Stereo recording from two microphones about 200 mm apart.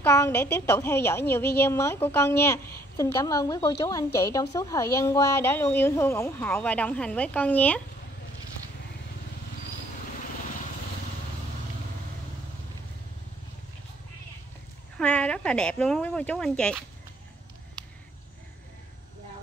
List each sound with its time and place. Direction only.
0.0 s a woman's voice: 15° left (ahead or behind)
15.0 s speech: 5° left (ahead or behind)